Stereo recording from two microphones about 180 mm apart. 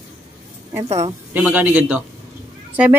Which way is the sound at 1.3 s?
10° right (ahead or behind).